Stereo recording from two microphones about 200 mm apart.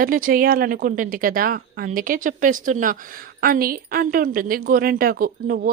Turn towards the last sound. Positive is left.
turn(degrees=-45)  # may be behind; listen again after turning